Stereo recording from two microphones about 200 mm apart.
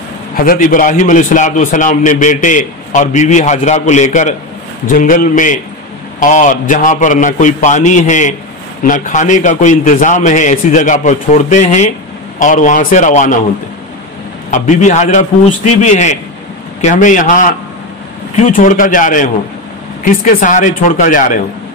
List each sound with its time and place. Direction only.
0.4 s a man's voice: 45° left (ahead or behind)
14.5 s a man's voice: 35° left (ahead or behind)